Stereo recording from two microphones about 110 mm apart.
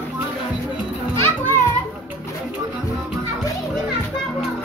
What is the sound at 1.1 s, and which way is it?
Children playing, 20° left (ahead or behind).